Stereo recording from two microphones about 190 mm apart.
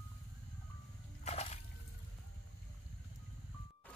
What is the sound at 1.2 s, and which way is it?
Water, 35° left (ahead or behind).